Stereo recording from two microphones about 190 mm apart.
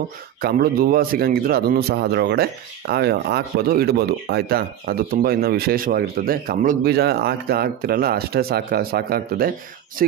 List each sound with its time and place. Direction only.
0.4 s a man's voice: 55° right (ahead or behind)